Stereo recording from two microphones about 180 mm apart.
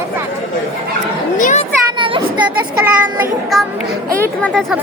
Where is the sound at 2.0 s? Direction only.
25° right (ahead or behind).